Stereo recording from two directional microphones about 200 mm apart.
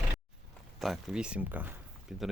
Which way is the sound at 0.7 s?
Centre (ahead or behind).